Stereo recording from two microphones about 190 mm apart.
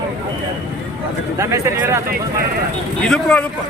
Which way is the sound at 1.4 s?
15° right (ahead or behind).